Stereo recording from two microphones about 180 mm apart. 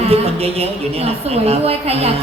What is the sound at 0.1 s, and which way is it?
A woman's voice, 35° right (ahead or behind).